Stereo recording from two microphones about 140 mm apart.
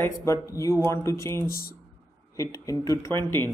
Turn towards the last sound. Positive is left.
turn(degrees=15)  # may be behind; listen again after turning